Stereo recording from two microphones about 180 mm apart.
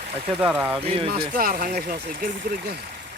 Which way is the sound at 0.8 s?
30° right (ahead or behind).